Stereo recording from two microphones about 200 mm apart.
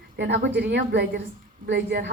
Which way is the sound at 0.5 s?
60° right (ahead or behind).